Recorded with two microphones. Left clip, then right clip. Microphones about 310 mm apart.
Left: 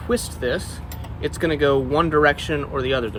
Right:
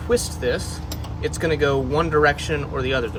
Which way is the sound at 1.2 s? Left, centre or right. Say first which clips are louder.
Left 1 dB; centre.